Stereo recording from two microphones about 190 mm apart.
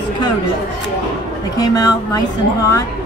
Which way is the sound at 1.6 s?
20° left (ahead or behind).